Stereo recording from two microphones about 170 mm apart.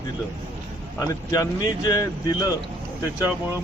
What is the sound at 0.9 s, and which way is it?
Speech, 20° left (ahead or behind).